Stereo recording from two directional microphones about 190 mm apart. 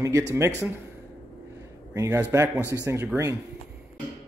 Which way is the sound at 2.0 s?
15° right (ahead or behind).